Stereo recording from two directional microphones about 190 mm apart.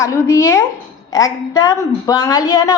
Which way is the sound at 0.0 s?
15° left (ahead or behind).